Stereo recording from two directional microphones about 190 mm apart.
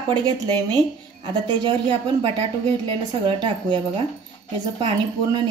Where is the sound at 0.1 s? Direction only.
25° right (ahead or behind).